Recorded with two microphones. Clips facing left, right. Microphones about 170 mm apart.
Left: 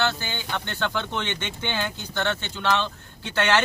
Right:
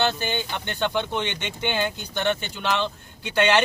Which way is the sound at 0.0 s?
20° right (ahead or behind).